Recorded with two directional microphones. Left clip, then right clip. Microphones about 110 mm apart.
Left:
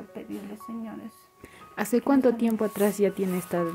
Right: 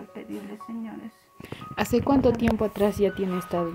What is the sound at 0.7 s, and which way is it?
Speech, 35° left (ahead or behind).